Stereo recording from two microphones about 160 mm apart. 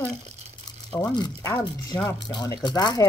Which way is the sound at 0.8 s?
25° left (ahead or behind).